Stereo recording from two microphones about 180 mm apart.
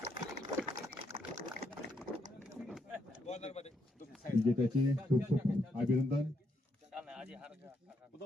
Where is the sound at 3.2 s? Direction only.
35° left (ahead or behind).